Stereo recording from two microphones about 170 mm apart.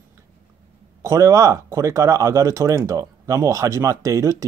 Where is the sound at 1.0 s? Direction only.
15° right (ahead or behind).